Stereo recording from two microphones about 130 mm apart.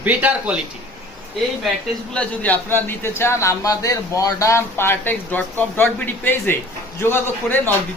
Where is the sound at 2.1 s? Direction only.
10° left (ahead or behind).